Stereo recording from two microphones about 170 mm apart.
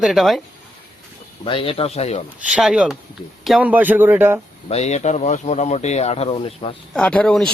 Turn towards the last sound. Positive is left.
turn(degrees=5)  # may be behind; listen again after turning